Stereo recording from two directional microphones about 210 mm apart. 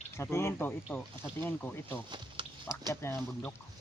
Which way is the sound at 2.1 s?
20° right (ahead or behind).